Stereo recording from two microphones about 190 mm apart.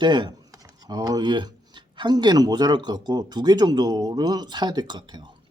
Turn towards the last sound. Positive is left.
turn(degrees=-25)  # may be behind; listen again after turning